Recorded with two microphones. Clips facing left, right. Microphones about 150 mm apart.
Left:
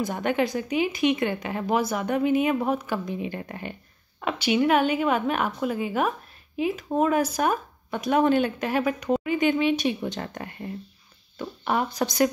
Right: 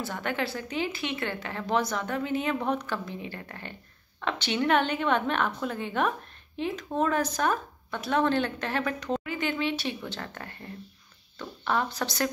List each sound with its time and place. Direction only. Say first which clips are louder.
0.0 s a woman's voice: left 6 dB; 20° left (ahead or behind)